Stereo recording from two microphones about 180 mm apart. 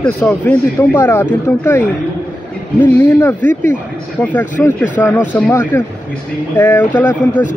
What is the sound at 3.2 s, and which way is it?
Speech, 10° left (ahead or behind).